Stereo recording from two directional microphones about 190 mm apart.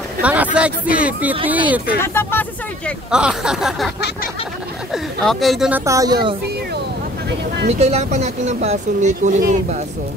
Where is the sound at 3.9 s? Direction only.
60° left (ahead or behind).